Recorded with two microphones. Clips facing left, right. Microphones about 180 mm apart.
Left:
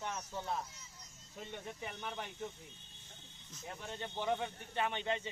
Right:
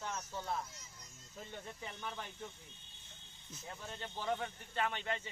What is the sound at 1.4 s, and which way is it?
Speech, 20° left (ahead or behind).